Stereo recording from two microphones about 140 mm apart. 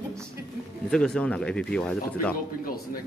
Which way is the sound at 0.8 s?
5° left (ahead or behind).